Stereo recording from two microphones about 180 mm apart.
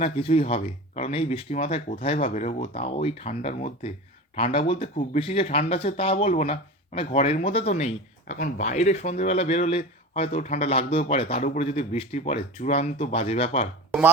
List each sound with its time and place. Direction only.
0.0 s speech: 35° left (ahead or behind)